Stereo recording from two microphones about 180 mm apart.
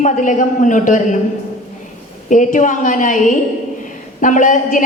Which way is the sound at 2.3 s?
45° left (ahead or behind).